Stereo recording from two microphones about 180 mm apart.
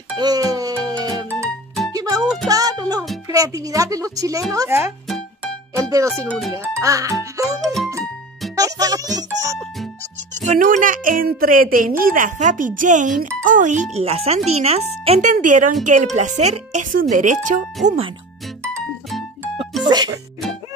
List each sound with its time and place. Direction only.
0.2 s music: 20° right (ahead or behind)
3.3 s a woman's voice: 20° right (ahead or behind)
5.8 s music: 20° right (ahead or behind)
6.2 s a child's voice: 5° left (ahead or behind)
6.8 s speech: 20° right (ahead or behind)
7.6 s a child's voice: centre (ahead or behind)
8.5 s music: 20° right (ahead or behind)
10.4 s a woman's voice: 45° right (ahead or behind)
17.8 s speech: 35° right (ahead or behind)
19.0 s music: centre (ahead or behind)
19.8 s music: 25° right (ahead or behind)